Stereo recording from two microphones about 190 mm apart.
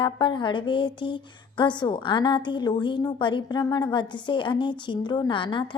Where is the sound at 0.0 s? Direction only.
25° left (ahead or behind).